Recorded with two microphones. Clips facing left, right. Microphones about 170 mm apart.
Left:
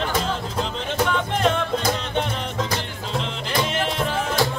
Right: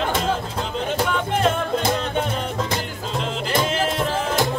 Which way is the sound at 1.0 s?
5° right (ahead or behind).